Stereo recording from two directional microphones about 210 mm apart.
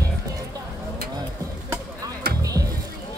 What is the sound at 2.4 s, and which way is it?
Music, 15° right (ahead or behind).